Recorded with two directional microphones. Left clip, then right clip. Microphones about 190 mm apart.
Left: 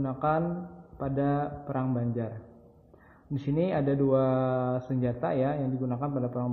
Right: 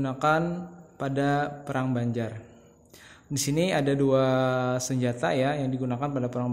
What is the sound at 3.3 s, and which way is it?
Speech, 25° right (ahead or behind).